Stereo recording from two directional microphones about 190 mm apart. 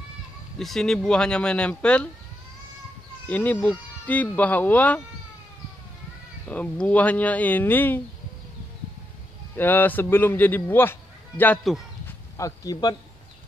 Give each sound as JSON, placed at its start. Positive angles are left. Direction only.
{"t": 0.6, "sound": "speech", "side_deg": 0}
{"t": 3.3, "sound": "a man's voice", "side_deg": 10}
{"t": 6.5, "sound": "a man's voice", "side_deg": 5}
{"t": 9.6, "sound": "a man's voice", "side_deg": 10}
{"t": 12.1, "sound": "a sound", "side_deg": 15}